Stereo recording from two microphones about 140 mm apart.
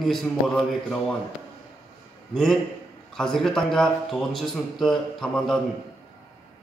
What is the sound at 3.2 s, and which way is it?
A man's voice, 5° left (ahead or behind).